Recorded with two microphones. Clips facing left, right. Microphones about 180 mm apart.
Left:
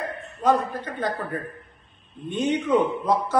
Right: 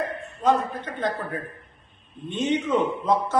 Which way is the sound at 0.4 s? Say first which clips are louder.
Left 1 dB; 5° left (ahead or behind).